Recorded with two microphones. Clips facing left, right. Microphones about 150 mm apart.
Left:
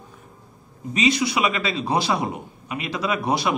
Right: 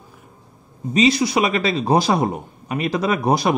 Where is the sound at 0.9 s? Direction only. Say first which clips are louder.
Right 5 dB; 35° right (ahead or behind).